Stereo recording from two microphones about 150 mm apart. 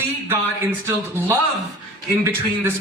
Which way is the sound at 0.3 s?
15° right (ahead or behind).